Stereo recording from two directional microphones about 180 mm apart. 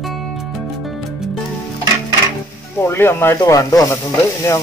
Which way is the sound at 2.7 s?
15° left (ahead or behind).